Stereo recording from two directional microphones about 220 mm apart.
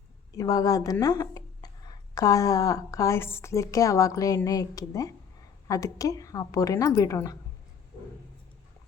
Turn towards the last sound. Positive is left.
turn(degrees=15)  # may be behind; listen again after turning